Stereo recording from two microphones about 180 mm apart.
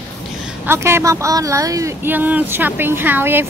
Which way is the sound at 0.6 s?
15° right (ahead or behind).